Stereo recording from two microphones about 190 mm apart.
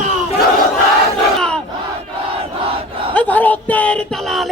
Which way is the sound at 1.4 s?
5° left (ahead or behind).